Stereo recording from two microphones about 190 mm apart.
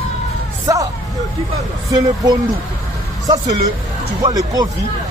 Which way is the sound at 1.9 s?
20° right (ahead or behind).